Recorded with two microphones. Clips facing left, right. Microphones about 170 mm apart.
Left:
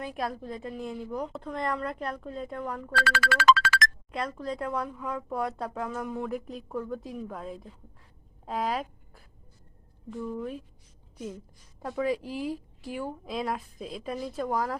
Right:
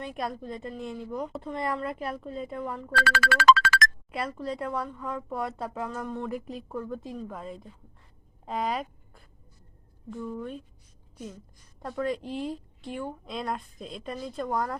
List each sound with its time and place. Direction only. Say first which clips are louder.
0.0 s speech: even; centre (ahead or behind)
2.9 s speech: right 2 dB; 45° right (ahead or behind)
4.1 s speech: even; 5° right (ahead or behind)
11.8 s speech: left 1 dB; 5° left (ahead or behind)